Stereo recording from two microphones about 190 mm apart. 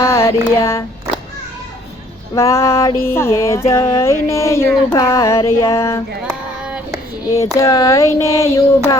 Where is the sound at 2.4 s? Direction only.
15° left (ahead or behind).